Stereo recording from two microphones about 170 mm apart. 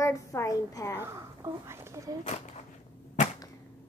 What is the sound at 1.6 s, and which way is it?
Speech, 15° right (ahead or behind).